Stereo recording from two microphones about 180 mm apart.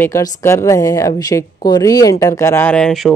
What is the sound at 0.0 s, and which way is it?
Speech, 15° left (ahead or behind).